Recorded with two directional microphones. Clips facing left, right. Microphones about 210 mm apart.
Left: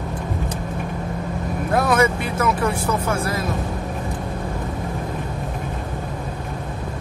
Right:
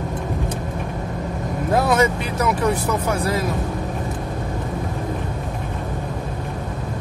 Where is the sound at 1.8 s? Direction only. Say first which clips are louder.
Even; 20° right (ahead or behind).